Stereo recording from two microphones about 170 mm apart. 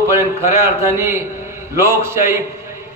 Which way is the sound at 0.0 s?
15° right (ahead or behind).